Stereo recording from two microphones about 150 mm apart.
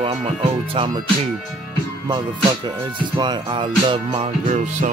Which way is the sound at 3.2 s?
30° right (ahead or behind).